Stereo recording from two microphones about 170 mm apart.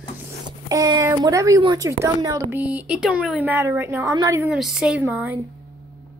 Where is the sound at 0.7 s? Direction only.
20° right (ahead or behind).